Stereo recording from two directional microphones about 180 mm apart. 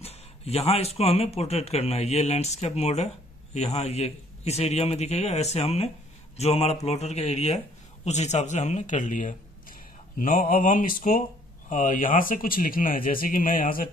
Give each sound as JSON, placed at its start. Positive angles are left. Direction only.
{"t": 0.0, "sound": "speech", "side_deg": 35}